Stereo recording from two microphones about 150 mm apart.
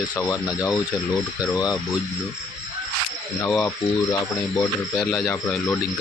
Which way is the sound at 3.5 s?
15° left (ahead or behind).